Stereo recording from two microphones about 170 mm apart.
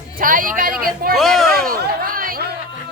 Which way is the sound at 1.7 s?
60° right (ahead or behind).